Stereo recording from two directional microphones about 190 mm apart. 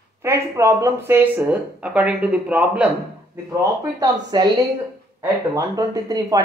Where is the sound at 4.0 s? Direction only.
20° right (ahead or behind).